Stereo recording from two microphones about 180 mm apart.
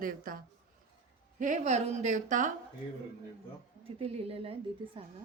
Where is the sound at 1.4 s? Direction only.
40° right (ahead or behind).